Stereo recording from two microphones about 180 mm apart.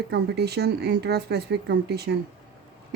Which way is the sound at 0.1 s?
65° right (ahead or behind).